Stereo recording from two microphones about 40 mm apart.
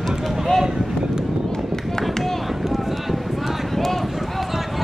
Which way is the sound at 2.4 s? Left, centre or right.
Centre.